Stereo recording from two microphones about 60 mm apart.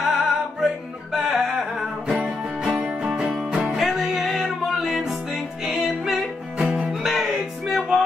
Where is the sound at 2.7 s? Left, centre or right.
Centre.